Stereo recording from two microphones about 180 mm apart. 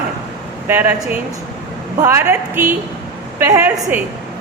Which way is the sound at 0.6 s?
10° right (ahead or behind).